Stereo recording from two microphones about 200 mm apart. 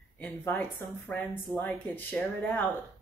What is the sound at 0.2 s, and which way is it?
A woman's voice, 10° left (ahead or behind).